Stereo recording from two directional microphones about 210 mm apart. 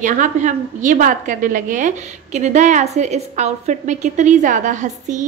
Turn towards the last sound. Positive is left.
turn(degrees=-35)  # may be behind; listen again after turning